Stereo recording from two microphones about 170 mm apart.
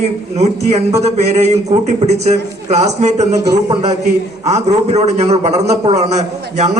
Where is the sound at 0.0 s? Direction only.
40° right (ahead or behind).